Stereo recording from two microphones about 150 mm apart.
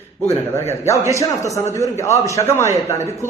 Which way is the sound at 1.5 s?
20° left (ahead or behind).